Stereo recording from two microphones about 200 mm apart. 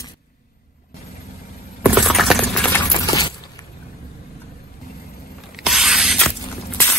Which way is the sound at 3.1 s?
20° left (ahead or behind).